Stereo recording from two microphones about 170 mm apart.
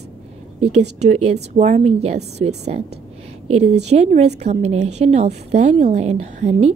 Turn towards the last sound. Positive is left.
turn(degrees=-40)  # may be behind; listen again after turning